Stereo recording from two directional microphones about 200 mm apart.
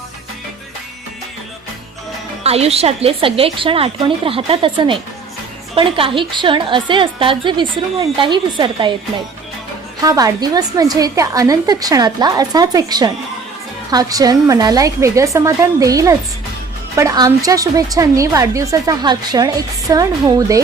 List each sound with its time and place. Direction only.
2.4 s a woman's voice: 30° right (ahead or behind)
10.0 s a woman's voice: 15° right (ahead or behind)